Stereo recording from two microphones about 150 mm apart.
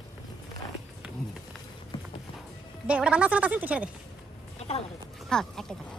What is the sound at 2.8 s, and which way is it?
A woman's voice, 5° right (ahead or behind).